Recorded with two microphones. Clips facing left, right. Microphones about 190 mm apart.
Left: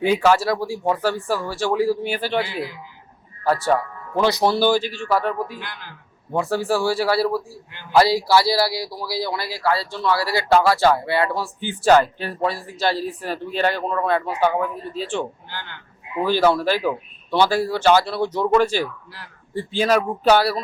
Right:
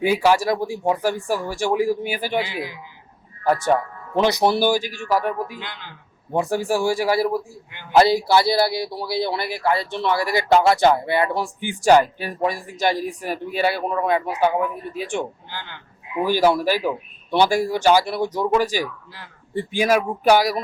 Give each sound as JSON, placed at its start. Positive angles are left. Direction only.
{"t": 0.0, "sound": "a man's voice", "side_deg": -10}